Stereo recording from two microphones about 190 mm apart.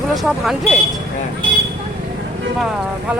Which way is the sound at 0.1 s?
Centre (ahead or behind).